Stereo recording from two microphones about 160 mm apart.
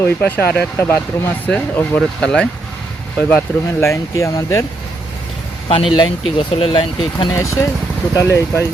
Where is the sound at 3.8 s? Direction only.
20° left (ahead or behind).